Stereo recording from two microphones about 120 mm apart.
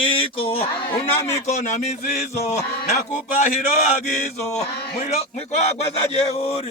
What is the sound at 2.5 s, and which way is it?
Speech, 65° left (ahead or behind).